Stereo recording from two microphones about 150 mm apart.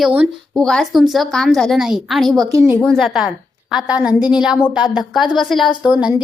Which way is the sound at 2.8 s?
Centre (ahead or behind).